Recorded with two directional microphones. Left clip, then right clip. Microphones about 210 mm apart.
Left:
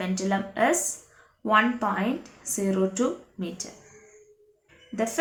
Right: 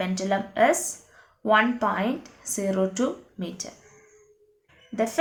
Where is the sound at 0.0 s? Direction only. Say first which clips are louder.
Right 2 dB; 30° right (ahead or behind).